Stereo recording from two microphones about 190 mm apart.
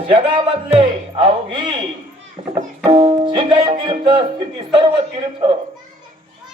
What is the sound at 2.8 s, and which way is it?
Music, 30° right (ahead or behind).